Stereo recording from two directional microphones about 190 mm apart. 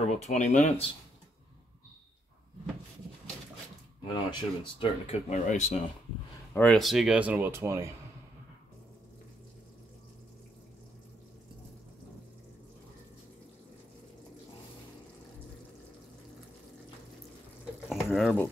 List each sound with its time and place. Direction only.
0.0 s speech: 35° left (ahead or behind)
4.1 s speech: 25° left (ahead or behind)
6.5 s speech: 5° left (ahead or behind); by 7.9 s 15° right (ahead or behind)
17.8 s stir: centre (ahead or behind)